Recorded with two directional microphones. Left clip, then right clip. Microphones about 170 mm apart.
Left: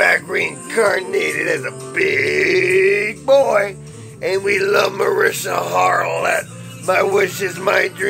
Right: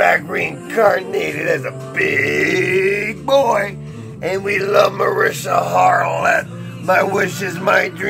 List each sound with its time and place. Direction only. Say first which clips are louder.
0.0 s speech: even; 50° left (ahead or behind)